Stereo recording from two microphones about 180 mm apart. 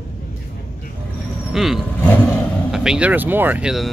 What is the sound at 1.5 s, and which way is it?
Speech, centre (ahead or behind).